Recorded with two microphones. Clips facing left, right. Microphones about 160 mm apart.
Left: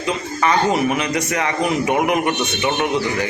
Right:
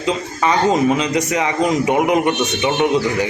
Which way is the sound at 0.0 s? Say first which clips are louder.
Right 1 dB; 20° right (ahead or behind).